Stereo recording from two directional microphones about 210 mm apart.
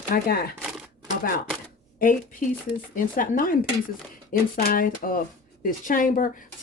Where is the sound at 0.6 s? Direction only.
5° right (ahead or behind).